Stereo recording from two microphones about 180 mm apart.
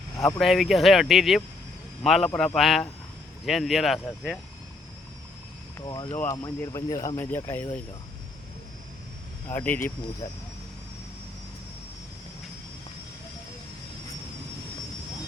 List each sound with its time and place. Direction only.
0.3 s speech: centre (ahead or behind)
5.8 s speech: 20° left (ahead or behind)
7.2 s speech: 10° left (ahead or behind)
9.5 s speech: 10° left (ahead or behind)